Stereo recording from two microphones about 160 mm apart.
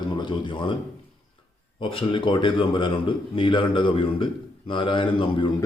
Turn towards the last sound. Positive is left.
turn(degrees=35)  # may be behind; listen again after turning